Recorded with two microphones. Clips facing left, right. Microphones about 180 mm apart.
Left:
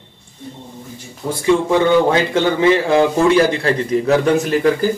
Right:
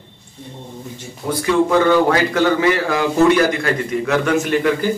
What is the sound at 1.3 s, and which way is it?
Speech, 25° left (ahead or behind).